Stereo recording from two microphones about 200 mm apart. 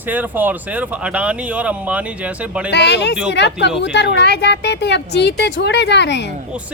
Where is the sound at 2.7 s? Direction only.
60° left (ahead or behind).